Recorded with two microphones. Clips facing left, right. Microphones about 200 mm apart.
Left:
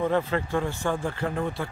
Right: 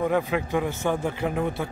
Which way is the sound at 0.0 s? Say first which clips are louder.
Right 1 dB; 15° right (ahead or behind).